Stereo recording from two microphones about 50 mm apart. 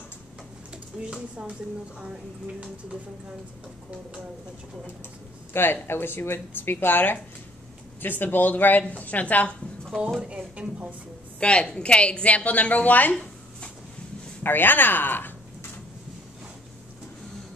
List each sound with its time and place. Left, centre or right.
1.0 s speech: centre
5.5 s speech: left
10.2 s speech: right
11.3 s a woman's voice: left
13.1 s a sound: centre
14.4 s speech: left